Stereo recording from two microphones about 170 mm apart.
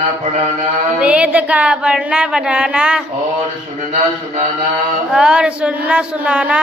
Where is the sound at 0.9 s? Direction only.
5° right (ahead or behind).